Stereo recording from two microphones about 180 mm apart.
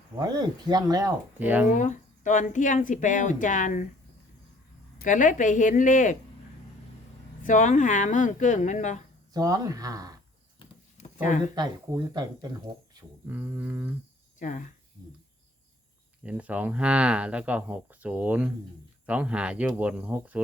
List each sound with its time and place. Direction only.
0.2 s speech: 20° right (ahead or behind)
1.4 s speech: 10° right (ahead or behind)
1.6 s speech: 45° left (ahead or behind)
4.9 s speech: 45° left (ahead or behind)
7.4 s speech: 45° left (ahead or behind)
9.3 s speech: 20° right (ahead or behind)
12.1 s speech: 20° right (ahead or behind)
13.2 s speech: 10° right (ahead or behind)
14.3 s speech: 45° left (ahead or behind)
16.2 s speech: 5° right (ahead or behind)